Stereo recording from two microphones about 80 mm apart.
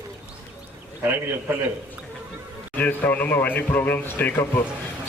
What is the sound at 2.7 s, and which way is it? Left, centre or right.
Speech, left.